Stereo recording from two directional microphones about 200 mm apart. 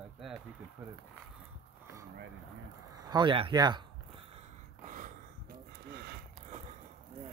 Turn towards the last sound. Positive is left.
turn(degrees=-50)  # may be behind; listen again after turning